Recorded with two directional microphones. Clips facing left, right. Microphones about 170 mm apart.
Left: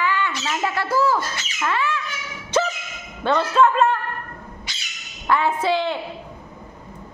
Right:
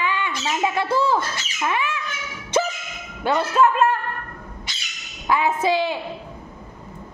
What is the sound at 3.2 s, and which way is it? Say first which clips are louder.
Speech: left 1 dB; 10° right (ahead or behind).